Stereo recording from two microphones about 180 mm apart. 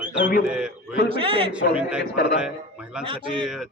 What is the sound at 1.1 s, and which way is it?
Speech, 30° right (ahead or behind).